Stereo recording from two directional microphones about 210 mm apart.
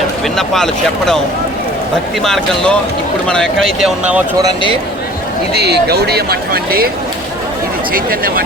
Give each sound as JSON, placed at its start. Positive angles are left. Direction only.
{"t": 0.3, "sound": "speech", "side_deg": 0}
{"t": 2.2, "sound": "speech", "side_deg": 0}
{"t": 5.5, "sound": "speech", "side_deg": -50}
{"t": 7.9, "sound": "speech", "side_deg": -45}